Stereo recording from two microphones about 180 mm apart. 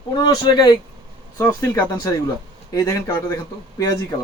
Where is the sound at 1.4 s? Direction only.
15° left (ahead or behind).